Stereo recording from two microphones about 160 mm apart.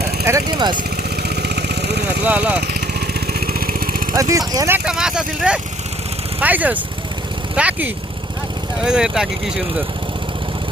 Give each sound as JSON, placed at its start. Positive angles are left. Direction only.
{"t": 0.3, "sound": "speech", "side_deg": -25}
{"t": 1.4, "sound": "vehicle", "side_deg": -90}
{"t": 2.2, "sound": "speech", "side_deg": -10}
{"t": 3.4, "sound": "vehicle", "side_deg": -65}
{"t": 4.1, "sound": "speech", "side_deg": -20}
{"t": 4.9, "sound": "speech", "side_deg": -5}